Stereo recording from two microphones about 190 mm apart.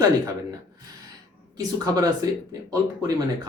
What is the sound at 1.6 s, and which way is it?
Speech, 20° right (ahead or behind).